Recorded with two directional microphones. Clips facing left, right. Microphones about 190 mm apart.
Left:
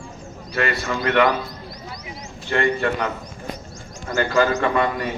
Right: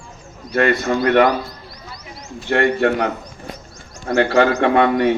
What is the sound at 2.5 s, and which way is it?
Speech, 65° right (ahead or behind).